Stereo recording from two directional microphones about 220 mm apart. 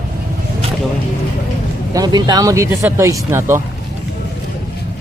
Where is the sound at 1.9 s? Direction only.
15° right (ahead or behind).